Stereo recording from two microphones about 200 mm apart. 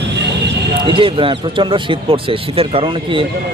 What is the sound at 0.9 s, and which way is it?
Speech, 25° right (ahead or behind).